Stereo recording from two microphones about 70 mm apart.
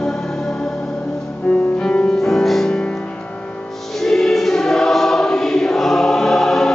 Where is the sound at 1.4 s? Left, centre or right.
Centre.